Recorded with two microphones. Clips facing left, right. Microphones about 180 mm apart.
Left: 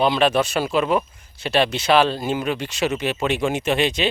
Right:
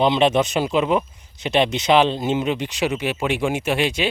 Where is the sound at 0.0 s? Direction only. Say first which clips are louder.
Right 1 dB; 20° right (ahead or behind).